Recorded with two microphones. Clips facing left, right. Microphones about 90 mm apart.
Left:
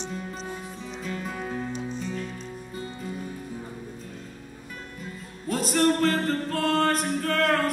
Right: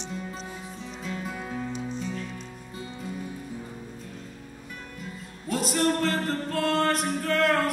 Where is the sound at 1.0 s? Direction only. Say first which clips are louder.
Left 1 dB; 45° left (ahead or behind).